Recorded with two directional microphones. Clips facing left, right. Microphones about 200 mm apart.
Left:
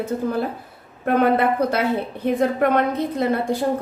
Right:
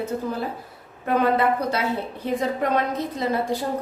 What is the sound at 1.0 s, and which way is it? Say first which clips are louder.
A woman's voice: left 3 dB; 55° left (ahead or behind).